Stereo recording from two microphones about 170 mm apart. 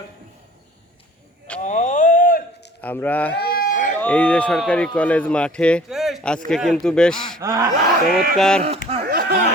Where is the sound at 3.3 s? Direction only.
60° left (ahead or behind).